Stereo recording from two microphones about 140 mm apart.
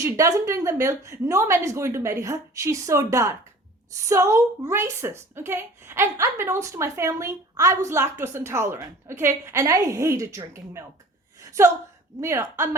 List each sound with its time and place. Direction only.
0.0 s a woman's voice: 20° right (ahead or behind)
12.2 s a woman's voice: 20° right (ahead or behind)